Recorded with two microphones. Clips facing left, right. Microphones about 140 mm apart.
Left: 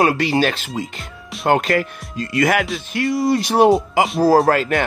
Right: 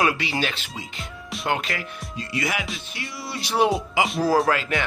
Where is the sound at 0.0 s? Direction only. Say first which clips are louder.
Left 7 dB; 45° left (ahead or behind).